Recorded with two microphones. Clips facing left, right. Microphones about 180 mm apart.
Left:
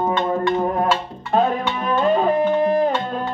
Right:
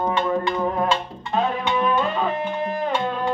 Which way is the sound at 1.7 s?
40° left (ahead or behind).